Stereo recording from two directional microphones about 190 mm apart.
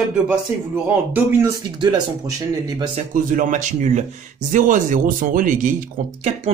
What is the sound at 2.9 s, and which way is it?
Speech, 40° right (ahead or behind).